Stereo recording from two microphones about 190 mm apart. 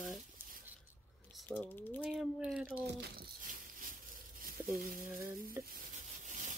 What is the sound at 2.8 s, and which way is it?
Speech, 65° right (ahead or behind).